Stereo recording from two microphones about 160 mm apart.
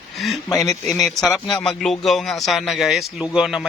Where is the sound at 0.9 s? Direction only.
Centre (ahead or behind).